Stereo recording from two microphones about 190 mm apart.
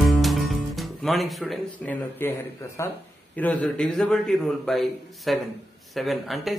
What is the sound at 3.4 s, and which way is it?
Speech, 10° left (ahead or behind).